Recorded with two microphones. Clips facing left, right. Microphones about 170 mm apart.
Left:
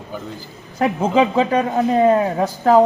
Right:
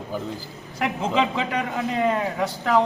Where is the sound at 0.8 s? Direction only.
45° left (ahead or behind).